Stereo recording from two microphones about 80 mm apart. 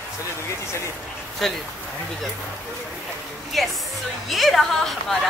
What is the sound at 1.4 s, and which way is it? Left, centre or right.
Speech, centre.